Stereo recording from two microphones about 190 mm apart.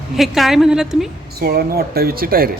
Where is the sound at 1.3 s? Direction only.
55° right (ahead or behind).